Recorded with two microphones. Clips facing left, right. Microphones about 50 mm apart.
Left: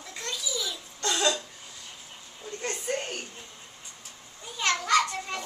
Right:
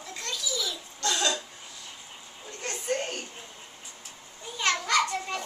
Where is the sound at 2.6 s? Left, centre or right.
Left.